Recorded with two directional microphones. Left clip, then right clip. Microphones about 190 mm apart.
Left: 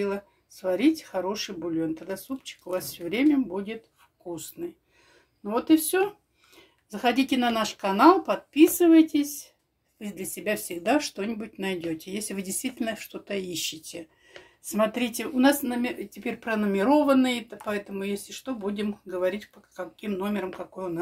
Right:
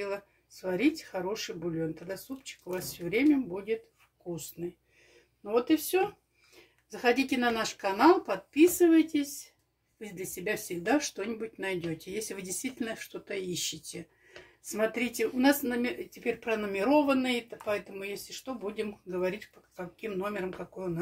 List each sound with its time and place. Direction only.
0.0 s speech: 40° left (ahead or behind)